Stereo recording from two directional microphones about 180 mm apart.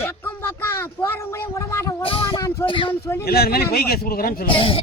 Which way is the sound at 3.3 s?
60° left (ahead or behind).